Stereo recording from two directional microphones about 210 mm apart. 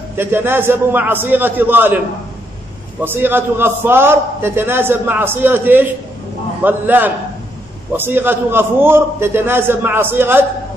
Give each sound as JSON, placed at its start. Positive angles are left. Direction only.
{"t": 0.2, "sound": "a man's voice", "side_deg": -10}
{"t": 3.0, "sound": "a man's voice", "side_deg": -10}